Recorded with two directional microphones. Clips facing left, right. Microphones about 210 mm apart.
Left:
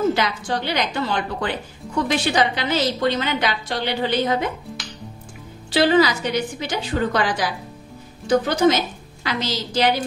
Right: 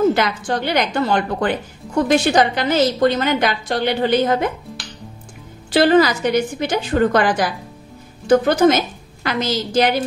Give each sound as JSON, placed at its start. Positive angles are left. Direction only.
{"t": 0.1, "sound": "a woman's voice", "side_deg": -50}
{"t": 4.7, "sound": "music", "side_deg": 0}
{"t": 5.7, "sound": "a woman's voice", "side_deg": -50}